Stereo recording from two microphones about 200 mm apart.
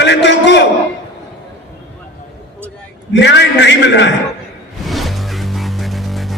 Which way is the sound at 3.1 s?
60° left (ahead or behind).